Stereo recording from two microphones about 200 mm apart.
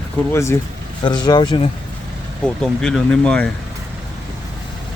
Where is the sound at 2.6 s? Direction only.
Centre (ahead or behind).